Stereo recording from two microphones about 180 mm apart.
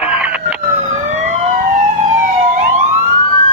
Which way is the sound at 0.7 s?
40° right (ahead or behind).